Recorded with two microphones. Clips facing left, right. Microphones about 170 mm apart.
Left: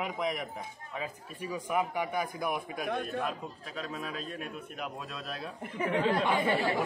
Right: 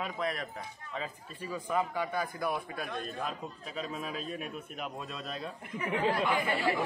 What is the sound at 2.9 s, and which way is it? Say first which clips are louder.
Speech: left 6 dB; 60° left (ahead or behind).